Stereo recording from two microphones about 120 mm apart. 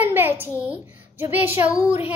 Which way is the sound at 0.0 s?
15° right (ahead or behind).